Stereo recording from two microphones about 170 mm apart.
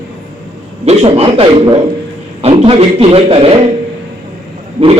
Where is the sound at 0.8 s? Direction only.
35° right (ahead or behind).